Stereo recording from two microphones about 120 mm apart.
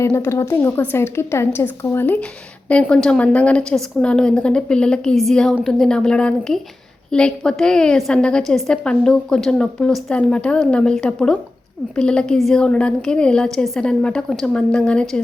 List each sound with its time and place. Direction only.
0.0 s a woman's voice: 25° left (ahead or behind); by 15.2 s 5° left (ahead or behind)